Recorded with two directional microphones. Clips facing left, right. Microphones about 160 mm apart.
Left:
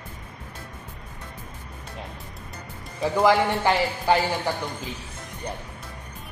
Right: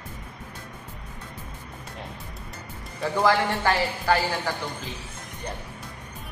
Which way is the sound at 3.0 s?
15° left (ahead or behind).